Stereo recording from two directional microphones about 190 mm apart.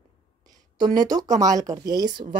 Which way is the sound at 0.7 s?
20° right (ahead or behind).